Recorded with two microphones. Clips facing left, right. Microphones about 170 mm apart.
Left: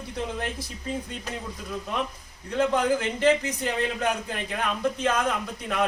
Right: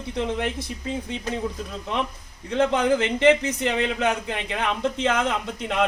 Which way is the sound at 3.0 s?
70° right (ahead or behind).